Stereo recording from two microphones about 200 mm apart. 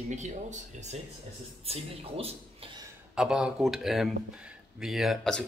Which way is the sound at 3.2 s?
5° right (ahead or behind).